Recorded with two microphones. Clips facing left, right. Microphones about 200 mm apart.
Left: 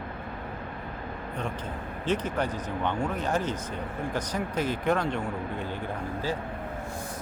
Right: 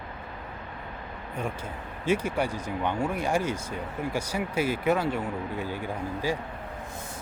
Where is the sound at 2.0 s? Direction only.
10° right (ahead or behind).